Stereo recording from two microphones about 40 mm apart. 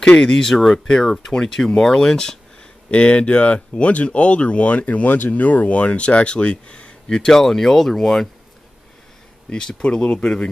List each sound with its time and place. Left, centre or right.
0.2 s speech: centre
2.9 s speech: left; by 8.3 s centre
9.5 s speech: left